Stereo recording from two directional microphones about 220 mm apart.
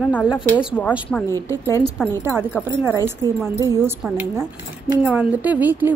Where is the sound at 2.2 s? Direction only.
10° right (ahead or behind).